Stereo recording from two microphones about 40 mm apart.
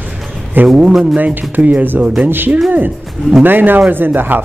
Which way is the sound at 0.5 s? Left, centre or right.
Right.